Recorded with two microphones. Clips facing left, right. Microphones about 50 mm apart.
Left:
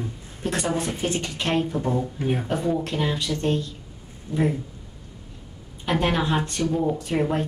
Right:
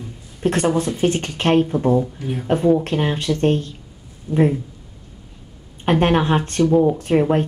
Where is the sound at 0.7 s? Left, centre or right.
Left.